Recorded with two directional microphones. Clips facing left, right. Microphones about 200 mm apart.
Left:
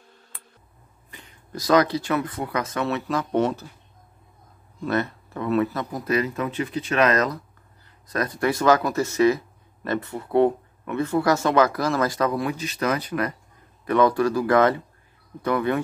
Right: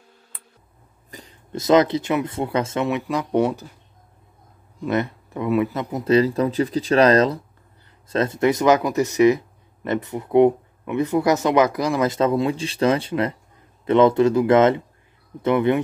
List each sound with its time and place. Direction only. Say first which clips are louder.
1.1 s speech: right 5 dB; 35° right (ahead or behind); by 3.6 s 15° right (ahead or behind)
4.8 s speech: right 2 dB; 15° right (ahead or behind)